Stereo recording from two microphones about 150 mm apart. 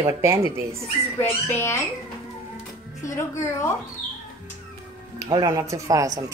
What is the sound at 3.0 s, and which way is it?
Speech, 20° left (ahead or behind).